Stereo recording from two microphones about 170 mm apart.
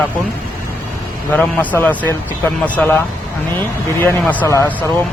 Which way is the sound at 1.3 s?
10° left (ahead or behind).